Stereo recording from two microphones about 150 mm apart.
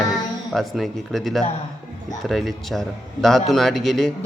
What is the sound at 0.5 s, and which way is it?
A man's voice, centre (ahead or behind).